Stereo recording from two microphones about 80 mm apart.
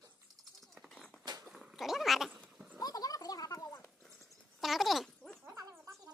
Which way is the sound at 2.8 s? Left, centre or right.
Left.